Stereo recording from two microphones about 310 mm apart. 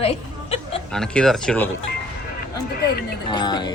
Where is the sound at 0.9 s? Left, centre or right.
Centre.